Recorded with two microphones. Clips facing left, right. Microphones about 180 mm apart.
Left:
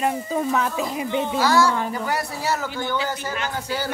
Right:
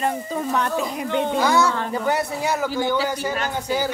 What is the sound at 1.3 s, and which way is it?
Speech, 20° right (ahead or behind).